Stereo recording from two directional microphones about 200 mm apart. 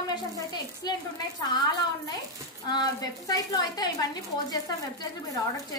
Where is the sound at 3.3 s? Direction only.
20° left (ahead or behind).